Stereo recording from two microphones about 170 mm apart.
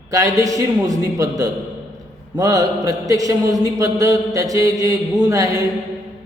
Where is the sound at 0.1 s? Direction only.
20° right (ahead or behind).